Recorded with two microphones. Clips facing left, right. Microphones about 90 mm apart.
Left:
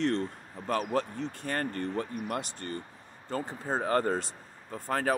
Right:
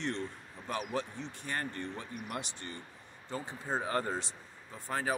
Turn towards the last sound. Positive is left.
turn(degrees=45)  # may be behind; listen again after turning